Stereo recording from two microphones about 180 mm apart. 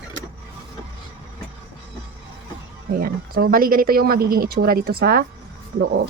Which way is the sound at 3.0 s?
55° right (ahead or behind).